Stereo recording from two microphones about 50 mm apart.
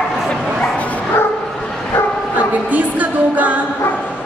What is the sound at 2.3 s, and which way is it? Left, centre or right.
Music, right.